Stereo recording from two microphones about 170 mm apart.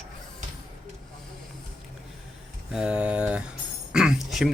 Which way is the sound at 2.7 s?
5° right (ahead or behind).